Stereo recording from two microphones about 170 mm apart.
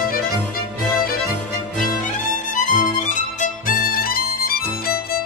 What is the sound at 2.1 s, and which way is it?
Music, 50° left (ahead or behind).